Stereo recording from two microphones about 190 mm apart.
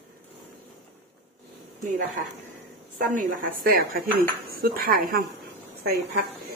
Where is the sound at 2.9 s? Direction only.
45° right (ahead or behind).